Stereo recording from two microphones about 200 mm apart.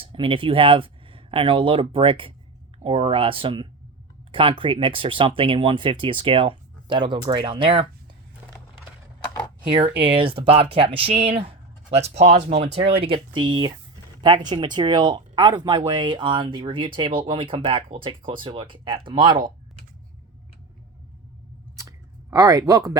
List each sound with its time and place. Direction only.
0.0 s speech: 25° right (ahead or behind)
9.6 s speech: 25° right (ahead or behind)
21.8 s clicking: 15° right (ahead or behind)